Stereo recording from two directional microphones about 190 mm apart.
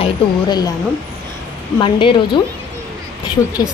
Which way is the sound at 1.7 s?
25° left (ahead or behind).